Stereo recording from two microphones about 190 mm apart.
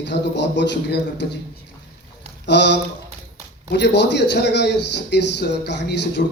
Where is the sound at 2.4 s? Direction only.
65° left (ahead or behind).